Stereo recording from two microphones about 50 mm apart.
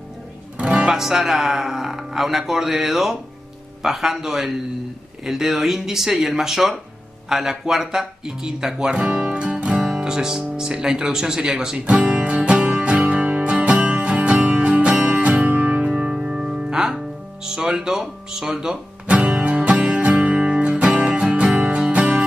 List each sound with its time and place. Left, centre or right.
0.7 s speech: centre
9.1 s music: centre
9.7 s speech: centre
11.8 s music: centre
15.0 s music: centre
15.2 s music: right
15.9 s music: centre
17.6 s speech: centre
19.6 s music: right